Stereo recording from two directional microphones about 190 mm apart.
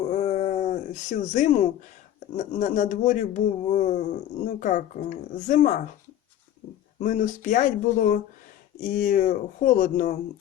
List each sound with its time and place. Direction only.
0.0 s a sound: 35° left (ahead or behind)
2.3 s speech: 40° left (ahead or behind)
7.0 s speech: 45° left (ahead or behind)